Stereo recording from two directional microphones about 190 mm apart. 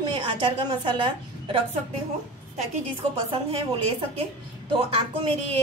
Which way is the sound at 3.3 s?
30° right (ahead or behind).